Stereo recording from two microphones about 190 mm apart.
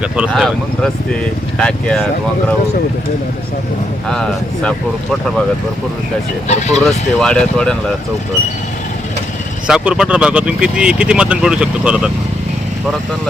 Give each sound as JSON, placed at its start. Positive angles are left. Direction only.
{"t": 0.3, "sound": "speech", "side_deg": 0}
{"t": 1.5, "sound": "speech", "side_deg": 5}
{"t": 4.1, "sound": "speech", "side_deg": 5}
{"t": 6.5, "sound": "speech", "side_deg": 35}
{"t": 6.8, "sound": "speech", "side_deg": 5}
{"t": 9.6, "sound": "speech", "side_deg": -5}